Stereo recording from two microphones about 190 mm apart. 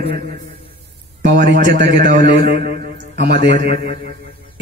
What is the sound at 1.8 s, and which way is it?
A man's voice, 50° right (ahead or behind).